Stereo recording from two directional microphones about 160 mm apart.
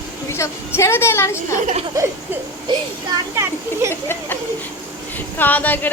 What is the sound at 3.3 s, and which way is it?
Speech, 15° right (ahead or behind).